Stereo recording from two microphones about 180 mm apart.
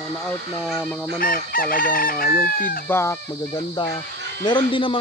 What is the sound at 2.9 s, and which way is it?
Speech, 15° left (ahead or behind).